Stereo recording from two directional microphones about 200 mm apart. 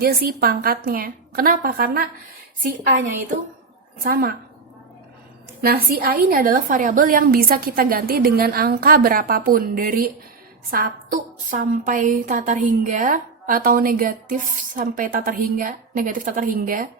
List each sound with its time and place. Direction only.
0.0 s a woman's voice: 50° right (ahead or behind)
4.0 s a woman's voice: 50° right (ahead or behind)
5.6 s a woman's voice: 50° right (ahead or behind)